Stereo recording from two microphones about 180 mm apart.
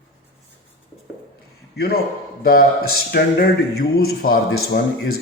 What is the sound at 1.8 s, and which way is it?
A man's voice, 60° left (ahead or behind).